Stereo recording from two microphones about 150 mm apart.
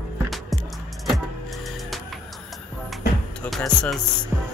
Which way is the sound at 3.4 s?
Centre (ahead or behind).